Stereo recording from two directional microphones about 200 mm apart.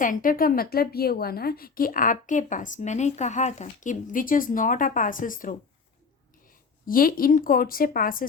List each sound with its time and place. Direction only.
0.0 s a woman's voice: 45° left (ahead or behind)
6.8 s a woman's voice: 45° left (ahead or behind)